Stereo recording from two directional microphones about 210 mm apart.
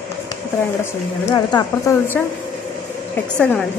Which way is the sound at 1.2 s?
15° left (ahead or behind).